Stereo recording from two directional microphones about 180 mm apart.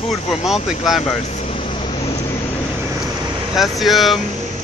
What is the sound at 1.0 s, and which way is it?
Vehicle, 35° left (ahead or behind).